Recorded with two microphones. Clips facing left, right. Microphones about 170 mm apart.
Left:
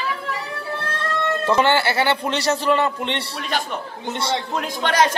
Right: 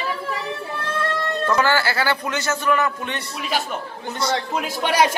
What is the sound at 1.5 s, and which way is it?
A man's voice, 25° left (ahead or behind).